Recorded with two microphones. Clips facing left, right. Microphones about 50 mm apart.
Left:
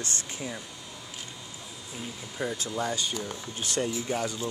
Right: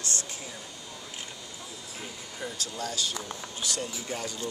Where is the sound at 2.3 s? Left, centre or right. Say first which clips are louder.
Left 5 dB; left.